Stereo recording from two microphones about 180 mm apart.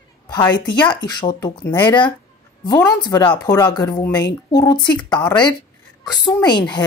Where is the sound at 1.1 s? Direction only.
20° left (ahead or behind).